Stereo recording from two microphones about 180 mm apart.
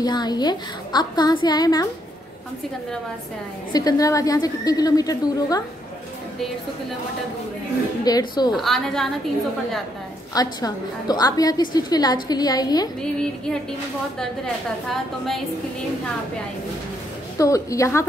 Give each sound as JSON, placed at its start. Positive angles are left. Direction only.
{"t": 0.0, "sound": "a woman's voice", "side_deg": 25}
{"t": 3.7, "sound": "a woman's voice", "side_deg": 20}
{"t": 8.0, "sound": "a woman's voice", "side_deg": 20}
{"t": 8.5, "sound": "a woman's voice", "side_deg": 0}
{"t": 10.3, "sound": "a woman's voice", "side_deg": 20}
{"t": 13.0, "sound": "a woman's voice", "side_deg": 5}
{"t": 17.4, "sound": "a woman's voice", "side_deg": 15}